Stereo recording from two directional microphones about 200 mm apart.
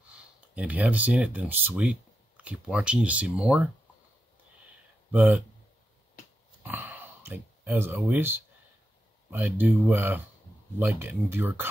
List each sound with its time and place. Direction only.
0.6 s speech: 5° right (ahead or behind)
5.1 s speech: 5° right (ahead or behind)
6.6 s a sound: 10° right (ahead or behind)
9.3 s speech: 10° right (ahead or behind)